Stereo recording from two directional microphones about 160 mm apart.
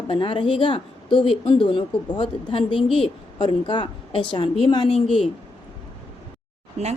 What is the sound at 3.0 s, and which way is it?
A woman's voice, 30° left (ahead or behind).